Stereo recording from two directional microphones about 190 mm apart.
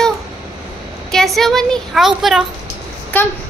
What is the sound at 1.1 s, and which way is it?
Speech, centre (ahead or behind).